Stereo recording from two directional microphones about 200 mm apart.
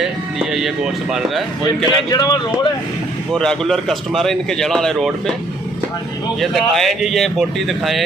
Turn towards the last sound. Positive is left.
turn(degrees=0)  # may be behind; listen again after turning